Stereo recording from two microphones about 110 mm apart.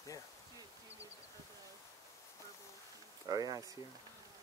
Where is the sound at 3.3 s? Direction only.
35° right (ahead or behind).